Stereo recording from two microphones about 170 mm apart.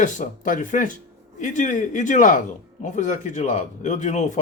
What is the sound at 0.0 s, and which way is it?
Speech, 50° left (ahead or behind).